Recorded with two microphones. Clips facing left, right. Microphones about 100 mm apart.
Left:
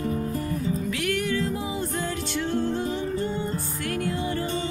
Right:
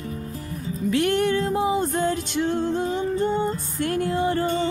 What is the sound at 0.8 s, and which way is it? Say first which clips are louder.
Music: right 6 dB; 35° right (ahead or behind).